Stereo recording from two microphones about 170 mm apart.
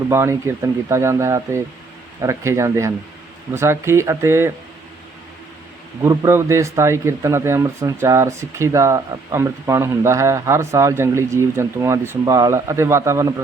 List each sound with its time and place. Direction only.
0.1 s speech: 15° right (ahead or behind)
6.0 s speech: 15° right (ahead or behind)